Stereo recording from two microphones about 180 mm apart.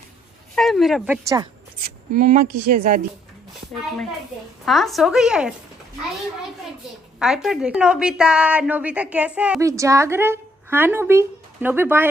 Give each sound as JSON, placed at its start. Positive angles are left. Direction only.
{"t": 0.6, "sound": "a woman's voice", "side_deg": 0}
{"t": 2.1, "sound": "speech", "side_deg": -50}
{"t": 4.6, "sound": "a woman's voice", "side_deg": 0}
{"t": 7.2, "sound": "a woman's voice", "side_deg": -5}
{"t": 9.6, "sound": "a woman's voice", "side_deg": -15}